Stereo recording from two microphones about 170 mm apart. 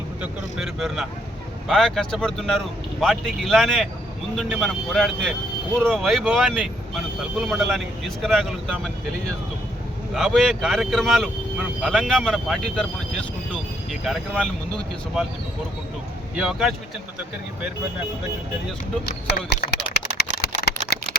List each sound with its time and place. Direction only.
0.2 s speech: 5° right (ahead or behind)
10.2 s speech: centre (ahead or behind)
16.4 s speech: 5° right (ahead or behind)
19.0 s a sound: 70° left (ahead or behind)